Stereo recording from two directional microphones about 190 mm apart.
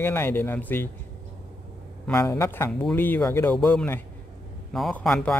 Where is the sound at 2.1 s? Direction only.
15° left (ahead or behind).